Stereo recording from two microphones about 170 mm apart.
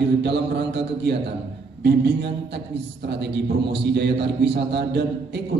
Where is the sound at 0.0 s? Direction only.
80° right.